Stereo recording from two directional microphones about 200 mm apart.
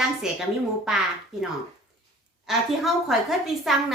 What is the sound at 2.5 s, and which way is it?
A woman's voice, centre (ahead or behind).